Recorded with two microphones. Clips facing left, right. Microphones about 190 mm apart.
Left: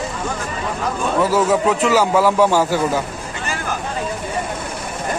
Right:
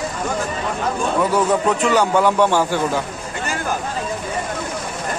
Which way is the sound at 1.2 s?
5° left (ahead or behind).